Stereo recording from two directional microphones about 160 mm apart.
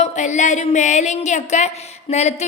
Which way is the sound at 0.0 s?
45° left (ahead or behind).